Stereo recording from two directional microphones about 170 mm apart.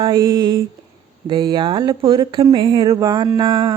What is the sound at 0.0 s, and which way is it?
Speech, 25° right (ahead or behind).